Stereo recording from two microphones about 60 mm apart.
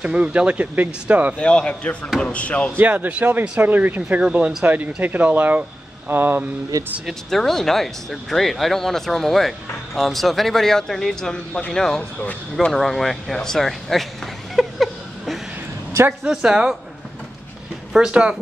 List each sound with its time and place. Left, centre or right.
0.0 s speech: right
1.4 s speech: centre
2.8 s speech: right
6.7 s speech: right
7.2 s speech: centre
12.7 s a sound: centre
16.3 s speech: centre
17.9 s speech: centre